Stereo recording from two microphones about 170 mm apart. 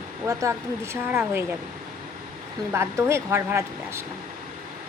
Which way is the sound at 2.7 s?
15° right (ahead or behind).